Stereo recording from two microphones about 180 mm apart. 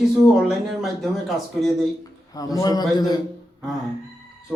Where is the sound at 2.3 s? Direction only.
20° left (ahead or behind).